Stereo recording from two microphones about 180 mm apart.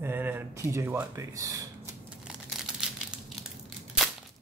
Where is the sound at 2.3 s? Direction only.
5° right (ahead or behind).